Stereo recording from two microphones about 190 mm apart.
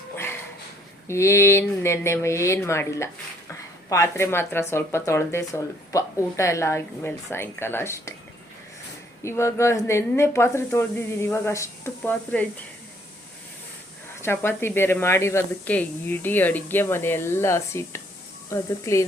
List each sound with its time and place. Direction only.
1.0 s speech: 15° left (ahead or behind)
9.2 s speech: 15° left (ahead or behind)
14.2 s speech: 10° left (ahead or behind)